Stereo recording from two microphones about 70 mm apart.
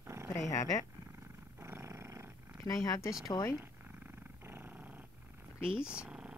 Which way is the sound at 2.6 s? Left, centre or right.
Left.